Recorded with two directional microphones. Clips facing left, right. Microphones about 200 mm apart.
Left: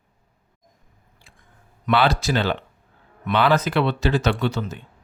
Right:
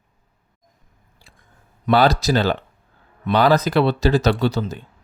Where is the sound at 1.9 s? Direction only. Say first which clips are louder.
Right 4 dB; 40° right (ahead or behind).